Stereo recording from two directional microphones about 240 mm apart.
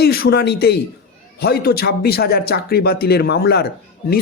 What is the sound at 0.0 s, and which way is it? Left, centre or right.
Speech, left.